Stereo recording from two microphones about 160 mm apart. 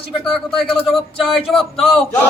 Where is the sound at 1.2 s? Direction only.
Centre (ahead or behind).